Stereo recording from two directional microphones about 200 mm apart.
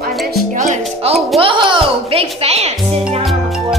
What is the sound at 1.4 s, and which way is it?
Music, 25° right (ahead or behind).